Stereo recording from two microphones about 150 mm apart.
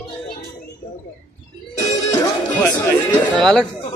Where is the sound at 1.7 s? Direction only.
25° left (ahead or behind).